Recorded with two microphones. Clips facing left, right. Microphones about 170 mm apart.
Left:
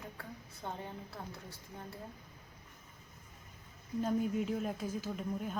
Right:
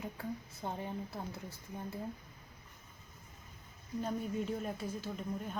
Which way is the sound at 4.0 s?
Centre (ahead or behind).